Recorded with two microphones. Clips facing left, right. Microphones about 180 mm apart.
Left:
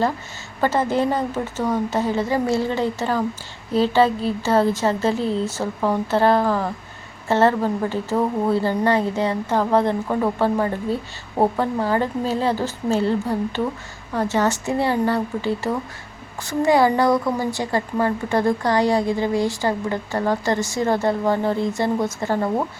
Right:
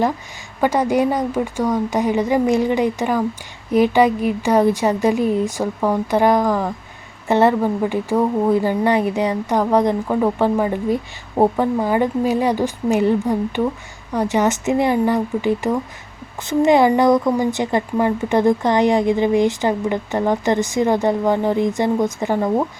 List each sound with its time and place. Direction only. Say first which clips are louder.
0.6 s a woman's voice: right 3 dB; 15° right (ahead or behind)